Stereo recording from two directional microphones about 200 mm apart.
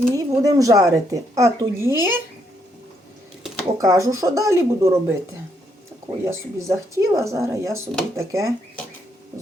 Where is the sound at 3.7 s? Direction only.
15° right (ahead or behind).